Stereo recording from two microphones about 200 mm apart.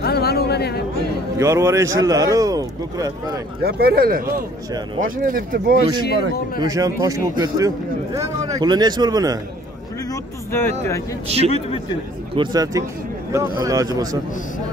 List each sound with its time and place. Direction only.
0.0 s a sound: 50° left (ahead or behind)
1.4 s a man's voice: 15° right (ahead or behind)
3.6 s speech: 50° right (ahead or behind)
6.6 s a man's voice: 15° right (ahead or behind)
10.5 s speech: 15° left (ahead or behind)
11.2 s a man's voice: 30° right (ahead or behind)
12.4 s a man's voice: 20° right (ahead or behind)